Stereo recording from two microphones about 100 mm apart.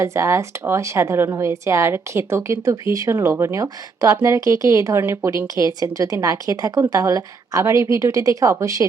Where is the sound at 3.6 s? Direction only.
40° right (ahead or behind).